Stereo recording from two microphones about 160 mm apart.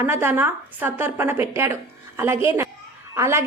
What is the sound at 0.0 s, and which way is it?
A woman's voice, 15° right (ahead or behind).